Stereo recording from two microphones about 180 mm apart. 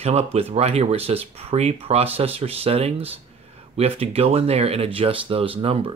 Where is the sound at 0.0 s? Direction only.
35° right (ahead or behind).